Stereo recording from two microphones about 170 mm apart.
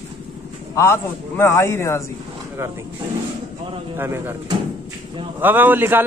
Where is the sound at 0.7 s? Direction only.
15° left (ahead or behind).